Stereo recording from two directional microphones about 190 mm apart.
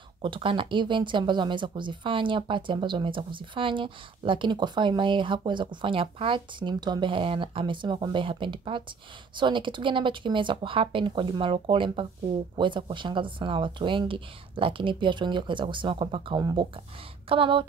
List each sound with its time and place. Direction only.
0.2 s speech: 25° right (ahead or behind)